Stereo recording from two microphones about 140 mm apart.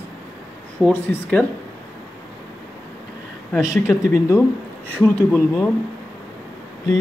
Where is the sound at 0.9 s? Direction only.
10° left (ahead or behind).